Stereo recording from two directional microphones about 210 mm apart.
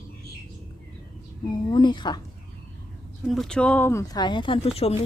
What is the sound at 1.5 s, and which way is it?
Speech, 20° left (ahead or behind).